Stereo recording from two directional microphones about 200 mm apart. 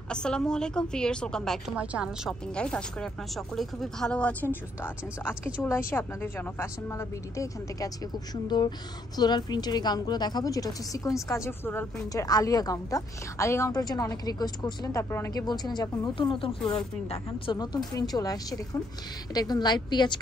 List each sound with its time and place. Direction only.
0.1 s a woman's voice: 5° left (ahead or behind); by 20.2 s 20° left (ahead or behind)